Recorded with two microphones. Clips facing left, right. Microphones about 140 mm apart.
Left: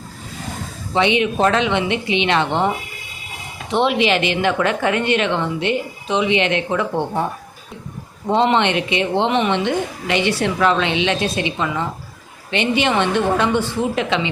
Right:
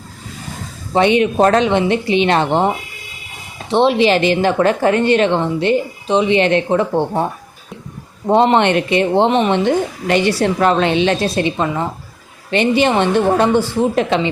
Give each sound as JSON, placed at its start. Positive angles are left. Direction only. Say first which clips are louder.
{"t": 0.9, "sound": "a woman's voice", "louder": "right 4 dB", "side_deg": -45}
{"t": 8.3, "sound": "a woman's voice", "louder": "right 4 dB", "side_deg": -50}